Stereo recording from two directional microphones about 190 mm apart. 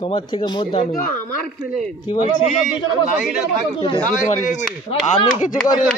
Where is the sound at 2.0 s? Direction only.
25° left (ahead or behind).